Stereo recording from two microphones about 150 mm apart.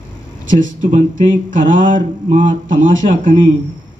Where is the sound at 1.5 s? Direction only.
60° right (ahead or behind).